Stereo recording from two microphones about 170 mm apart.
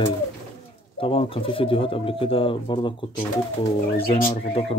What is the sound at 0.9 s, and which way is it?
Speech, 30° left (ahead or behind).